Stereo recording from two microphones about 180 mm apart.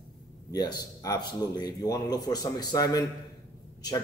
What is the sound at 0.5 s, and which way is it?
A man's voice, 20° left (ahead or behind).